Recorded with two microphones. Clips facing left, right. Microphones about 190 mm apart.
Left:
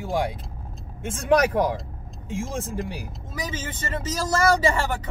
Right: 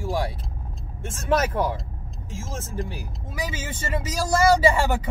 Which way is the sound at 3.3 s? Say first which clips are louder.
Right 1 dB; 10° right (ahead or behind).